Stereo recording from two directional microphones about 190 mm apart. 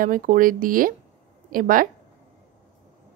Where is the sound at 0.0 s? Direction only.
45° right (ahead or behind).